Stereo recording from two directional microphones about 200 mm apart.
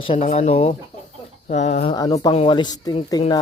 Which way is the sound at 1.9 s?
20° left (ahead or behind).